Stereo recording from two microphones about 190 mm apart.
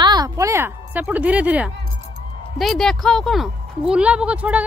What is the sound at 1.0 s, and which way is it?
Speech, 5° right (ahead or behind).